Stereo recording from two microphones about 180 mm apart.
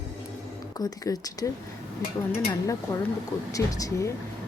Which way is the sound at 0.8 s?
20° left (ahead or behind).